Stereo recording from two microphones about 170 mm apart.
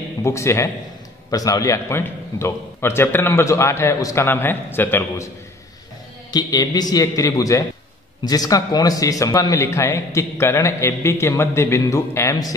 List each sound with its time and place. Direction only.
0.2 s speech: 15° left (ahead or behind)
6.3 s a man's voice: 25° left (ahead or behind)